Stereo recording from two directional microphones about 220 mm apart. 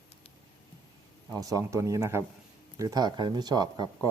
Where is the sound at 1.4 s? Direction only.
15° right (ahead or behind).